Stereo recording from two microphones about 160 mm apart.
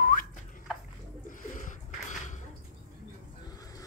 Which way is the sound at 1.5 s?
55° left (ahead or behind).